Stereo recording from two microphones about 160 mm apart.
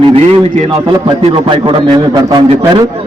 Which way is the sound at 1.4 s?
30° right (ahead or behind).